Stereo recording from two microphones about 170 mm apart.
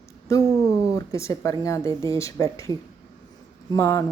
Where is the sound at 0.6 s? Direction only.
20° left (ahead or behind).